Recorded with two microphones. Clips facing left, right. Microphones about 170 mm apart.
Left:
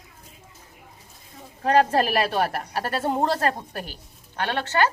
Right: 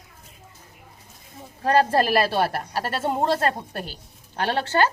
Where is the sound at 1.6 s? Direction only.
35° right (ahead or behind).